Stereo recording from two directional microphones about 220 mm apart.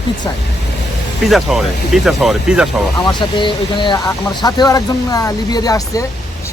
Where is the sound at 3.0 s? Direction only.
20° left (ahead or behind).